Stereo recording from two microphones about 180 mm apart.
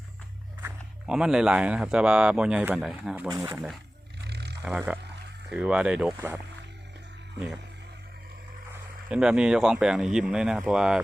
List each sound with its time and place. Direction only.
0.6 s speech: 5° right (ahead or behind)
4.2 s roaring cats: 65° right (ahead or behind)
4.6 s speech: 5° right (ahead or behind)
9.0 s speech: 5° right (ahead or behind)